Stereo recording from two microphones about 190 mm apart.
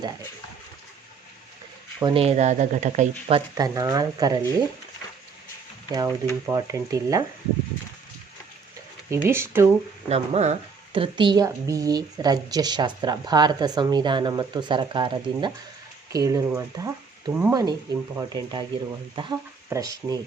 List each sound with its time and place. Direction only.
2.0 s speech: 25° right (ahead or behind)
3.6 s a woman's voice: 20° right (ahead or behind)
5.9 s a woman's voice: 20° right (ahead or behind)
9.0 s speech: 15° right (ahead or behind)
10.1 s a woman's voice: 35° right (ahead or behind); by 20.1 s 20° right (ahead or behind)